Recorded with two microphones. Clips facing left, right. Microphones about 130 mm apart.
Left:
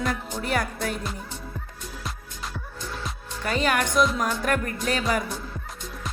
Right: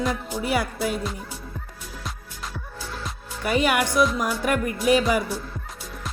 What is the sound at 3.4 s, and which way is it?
Music, 10° right (ahead or behind).